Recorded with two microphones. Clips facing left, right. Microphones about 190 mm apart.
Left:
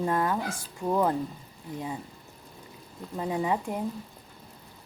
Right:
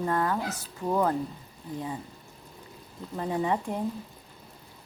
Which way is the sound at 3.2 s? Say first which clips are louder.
Even; 10° left (ahead or behind).